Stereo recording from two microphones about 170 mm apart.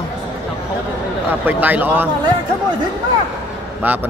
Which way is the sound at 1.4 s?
10° right (ahead or behind).